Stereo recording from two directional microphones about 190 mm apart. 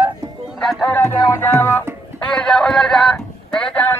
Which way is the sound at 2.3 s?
Centre (ahead or behind).